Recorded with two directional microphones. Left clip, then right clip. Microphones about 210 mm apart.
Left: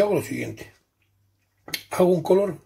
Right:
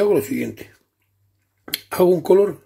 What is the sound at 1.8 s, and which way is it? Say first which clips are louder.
Speech: right 4 dB; 45° right (ahead or behind).